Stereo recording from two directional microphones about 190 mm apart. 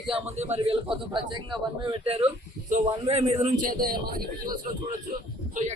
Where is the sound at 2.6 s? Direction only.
35° right (ahead or behind).